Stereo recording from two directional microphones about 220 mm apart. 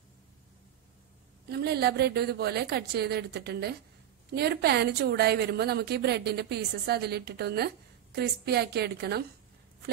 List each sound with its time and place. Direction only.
1.5 s a woman's voice: 45° right (ahead or behind)